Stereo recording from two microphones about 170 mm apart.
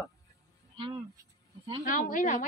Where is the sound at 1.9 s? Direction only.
50° left (ahead or behind).